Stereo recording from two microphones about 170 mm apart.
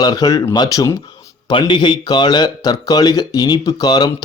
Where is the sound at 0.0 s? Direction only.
20° left (ahead or behind).